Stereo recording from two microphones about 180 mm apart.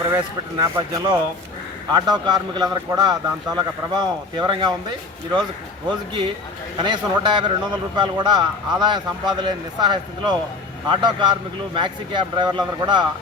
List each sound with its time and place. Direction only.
0.6 s speech: 20° right (ahead or behind)
5.9 s speech: 30° right (ahead or behind)